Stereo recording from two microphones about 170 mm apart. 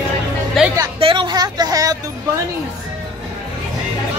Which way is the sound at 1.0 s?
30° right (ahead or behind).